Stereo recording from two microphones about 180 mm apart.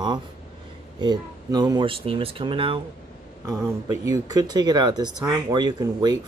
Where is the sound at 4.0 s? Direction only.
20° right (ahead or behind).